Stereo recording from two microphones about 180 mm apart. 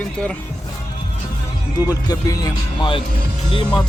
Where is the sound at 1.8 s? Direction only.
20° left (ahead or behind).